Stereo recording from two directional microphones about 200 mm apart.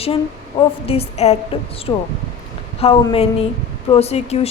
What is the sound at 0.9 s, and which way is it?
A woman's voice, 30° left (ahead or behind).